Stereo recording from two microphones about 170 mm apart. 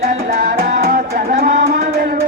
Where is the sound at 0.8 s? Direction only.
60° right (ahead or behind).